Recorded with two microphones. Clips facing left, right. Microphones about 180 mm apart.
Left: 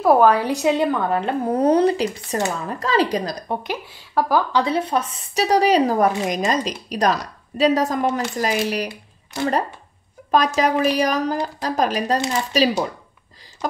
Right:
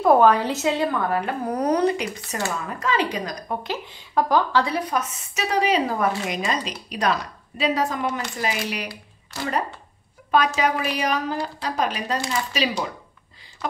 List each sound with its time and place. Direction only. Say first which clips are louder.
0.0 s a woman's voice: left 1 dB; 5° left (ahead or behind); by 3.3 s 35° left (ahead or behind)
3.4 s speech: left 2 dB; 15° left (ahead or behind); by 8.8 s 40° left (ahead or behind)
10.3 s speech: left 3 dB; 40° left (ahead or behind)